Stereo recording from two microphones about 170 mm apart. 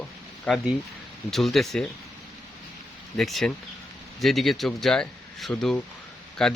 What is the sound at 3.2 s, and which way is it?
A man's voice, centre (ahead or behind).